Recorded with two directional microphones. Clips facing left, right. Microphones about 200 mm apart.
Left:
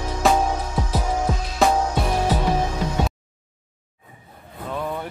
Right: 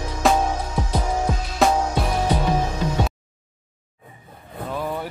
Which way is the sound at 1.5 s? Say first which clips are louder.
Even; centre (ahead or behind).